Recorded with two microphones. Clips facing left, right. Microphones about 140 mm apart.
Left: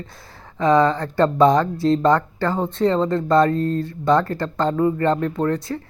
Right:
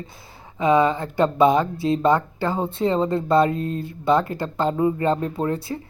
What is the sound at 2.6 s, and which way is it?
Speech, 10° right (ahead or behind).